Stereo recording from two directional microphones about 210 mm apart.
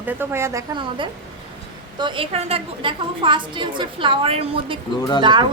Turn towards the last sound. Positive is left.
turn(degrees=-20)  # may be behind; listen again after turning